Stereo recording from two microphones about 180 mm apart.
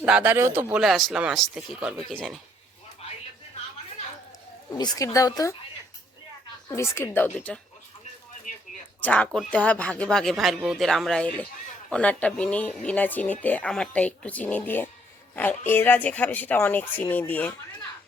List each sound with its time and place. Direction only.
0.0 s speech: 10° right (ahead or behind)
4.7 s speech: 20° left (ahead or behind)
6.7 s speech: 15° left (ahead or behind)
9.0 s speech: 10° left (ahead or behind)